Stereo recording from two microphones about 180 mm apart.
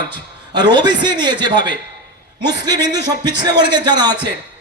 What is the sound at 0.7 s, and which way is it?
Speech, 25° right (ahead or behind).